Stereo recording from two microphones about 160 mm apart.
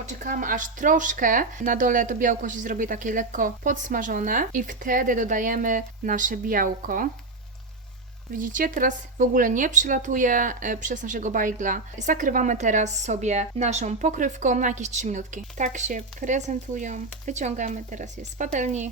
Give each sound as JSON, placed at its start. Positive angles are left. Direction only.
{"t": 0.0, "sound": "speech", "side_deg": -50}
{"t": 8.4, "sound": "speech", "side_deg": -55}